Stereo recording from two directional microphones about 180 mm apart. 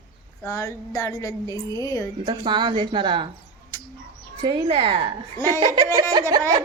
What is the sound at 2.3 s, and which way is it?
A woman's voice, 25° right (ahead or behind).